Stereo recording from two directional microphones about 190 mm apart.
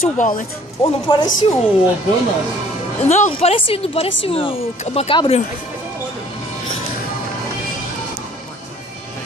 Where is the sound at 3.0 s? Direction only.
35° left (ahead or behind).